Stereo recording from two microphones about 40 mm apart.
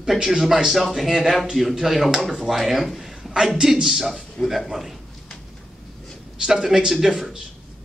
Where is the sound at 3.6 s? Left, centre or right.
Centre.